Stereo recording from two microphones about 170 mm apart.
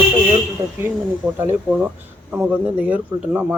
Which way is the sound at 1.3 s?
10° right (ahead or behind).